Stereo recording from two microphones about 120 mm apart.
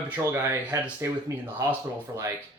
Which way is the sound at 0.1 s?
20° right (ahead or behind).